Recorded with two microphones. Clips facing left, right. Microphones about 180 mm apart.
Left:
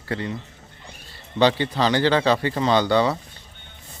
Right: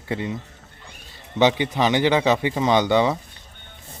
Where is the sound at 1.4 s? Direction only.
15° right (ahead or behind).